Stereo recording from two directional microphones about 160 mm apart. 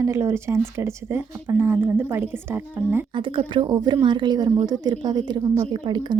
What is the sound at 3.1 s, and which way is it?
Speech, 30° right (ahead or behind).